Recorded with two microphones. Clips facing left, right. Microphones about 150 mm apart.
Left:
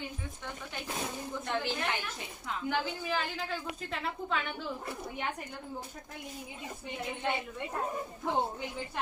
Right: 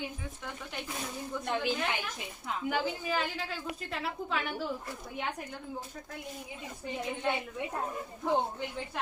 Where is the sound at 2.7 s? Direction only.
5° right (ahead or behind).